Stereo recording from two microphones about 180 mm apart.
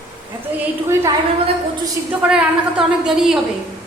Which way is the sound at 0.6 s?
15° right (ahead or behind).